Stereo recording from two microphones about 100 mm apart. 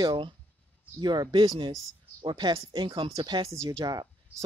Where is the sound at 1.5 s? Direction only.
35° right (ahead or behind).